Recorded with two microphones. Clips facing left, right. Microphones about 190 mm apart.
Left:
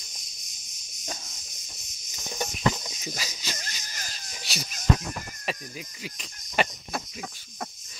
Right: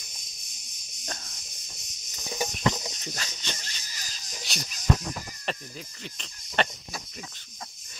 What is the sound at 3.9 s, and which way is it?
Wheeze, 55° left (ahead or behind).